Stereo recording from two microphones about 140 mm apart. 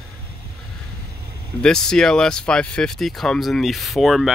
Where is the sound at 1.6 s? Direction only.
5° left (ahead or behind).